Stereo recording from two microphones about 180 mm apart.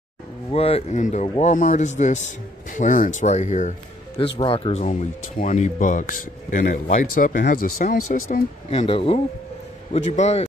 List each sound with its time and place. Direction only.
0.5 s speech: 35° left (ahead or behind)
4.4 s speech: 30° left (ahead or behind); by 8.5 s 50° left (ahead or behind)
8.6 s speech: 35° left (ahead or behind)